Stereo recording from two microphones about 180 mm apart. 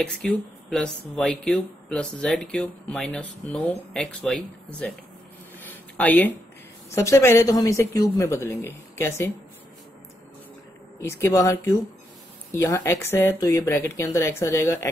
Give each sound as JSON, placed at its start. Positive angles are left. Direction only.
{"t": 0.0, "sound": "speech", "side_deg": 5}
{"t": 5.6, "sound": "a sound", "side_deg": 10}
{"t": 6.9, "sound": "speech", "side_deg": 15}
{"t": 11.1, "sound": "speech", "side_deg": 15}